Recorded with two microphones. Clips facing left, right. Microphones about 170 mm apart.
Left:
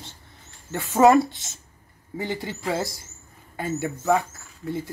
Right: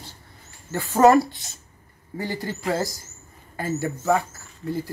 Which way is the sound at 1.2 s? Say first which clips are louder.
Left 3 dB; 25° left (ahead or behind).